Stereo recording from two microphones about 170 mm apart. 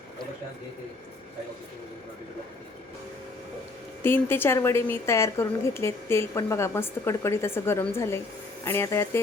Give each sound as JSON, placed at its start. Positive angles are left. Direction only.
{"t": 4.0, "sound": "speech", "side_deg": 15}